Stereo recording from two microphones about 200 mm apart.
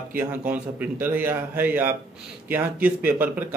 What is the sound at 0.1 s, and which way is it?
Speech, 10° right (ahead or behind).